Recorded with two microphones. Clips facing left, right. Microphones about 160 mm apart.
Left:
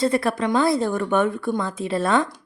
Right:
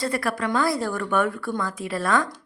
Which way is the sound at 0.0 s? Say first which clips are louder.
Left 5 dB; 25° left (ahead or behind).